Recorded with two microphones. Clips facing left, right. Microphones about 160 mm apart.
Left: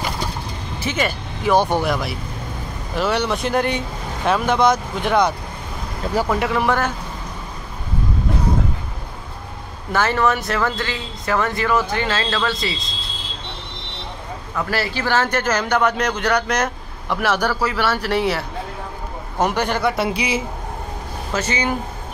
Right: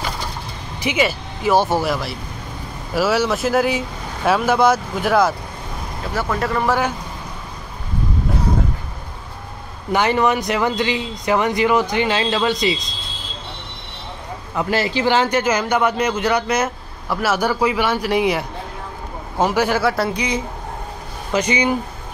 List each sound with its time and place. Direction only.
0.7 s speech: 10° right (ahead or behind)
6.1 s speech: 10° left (ahead or behind)
9.9 s speech: 15° right (ahead or behind)
14.5 s speech: 20° right (ahead or behind); by 20.1 s centre (ahead or behind)
20.1 s speech: 10° left (ahead or behind)
21.3 s speech: 15° right (ahead or behind)